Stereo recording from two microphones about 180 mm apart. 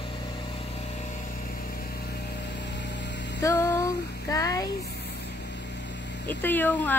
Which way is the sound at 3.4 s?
15° left (ahead or behind).